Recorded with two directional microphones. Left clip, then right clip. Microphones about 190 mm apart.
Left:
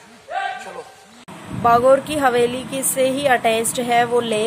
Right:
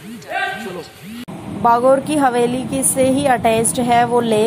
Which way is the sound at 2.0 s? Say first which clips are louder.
Right 2 dB; 25° left (ahead or behind).